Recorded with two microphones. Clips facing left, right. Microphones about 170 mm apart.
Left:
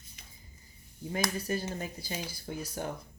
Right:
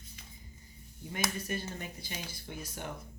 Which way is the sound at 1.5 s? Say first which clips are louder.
Left 4 dB; 35° left (ahead or behind).